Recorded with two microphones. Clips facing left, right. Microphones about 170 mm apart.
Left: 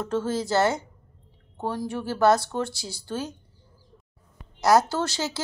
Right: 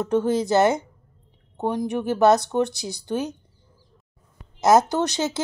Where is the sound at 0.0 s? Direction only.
20° right (ahead or behind).